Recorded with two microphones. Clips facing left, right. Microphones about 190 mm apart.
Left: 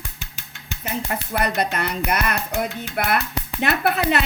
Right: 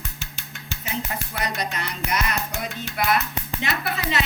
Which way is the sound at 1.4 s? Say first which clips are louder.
Left 7 dB; 60° left (ahead or behind).